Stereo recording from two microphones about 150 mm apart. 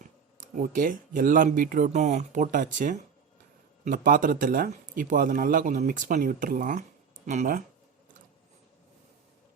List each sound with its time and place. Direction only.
0.3 s speech: 60° right (ahead or behind)